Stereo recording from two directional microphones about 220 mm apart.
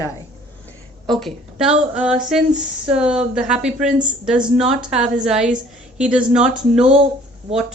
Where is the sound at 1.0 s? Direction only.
Centre (ahead or behind).